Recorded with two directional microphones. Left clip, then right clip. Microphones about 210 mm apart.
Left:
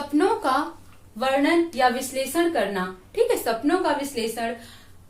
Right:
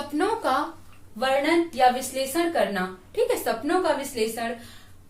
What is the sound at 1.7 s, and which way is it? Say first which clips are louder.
Speech: right 1 dB; 25° left (ahead or behind).